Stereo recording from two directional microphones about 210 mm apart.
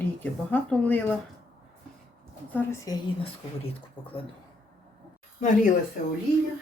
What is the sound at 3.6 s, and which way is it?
Speech, 25° left (ahead or behind).